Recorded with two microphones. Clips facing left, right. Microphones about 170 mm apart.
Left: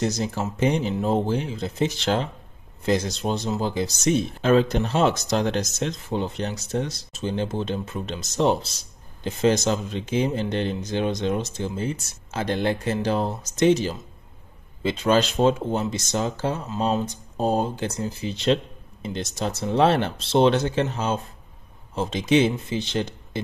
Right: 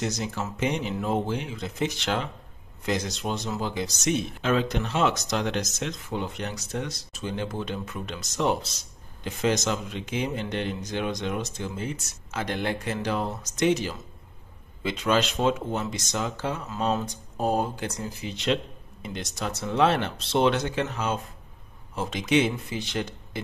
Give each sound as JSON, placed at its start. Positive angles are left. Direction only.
{"t": 0.0, "sound": "speech", "side_deg": 35}